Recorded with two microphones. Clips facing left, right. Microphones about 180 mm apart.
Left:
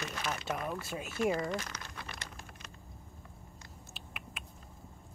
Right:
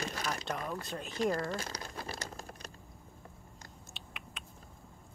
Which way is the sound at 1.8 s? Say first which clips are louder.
Right 5 dB; 35° right (ahead or behind).